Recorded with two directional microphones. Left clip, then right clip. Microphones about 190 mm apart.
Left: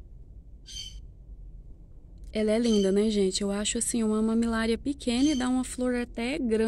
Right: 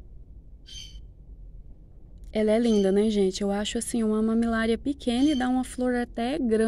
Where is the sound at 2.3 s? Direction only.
10° right (ahead or behind).